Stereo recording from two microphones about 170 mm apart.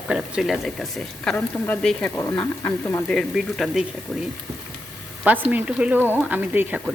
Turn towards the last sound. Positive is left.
turn(degrees=-5)  # may be behind; listen again after turning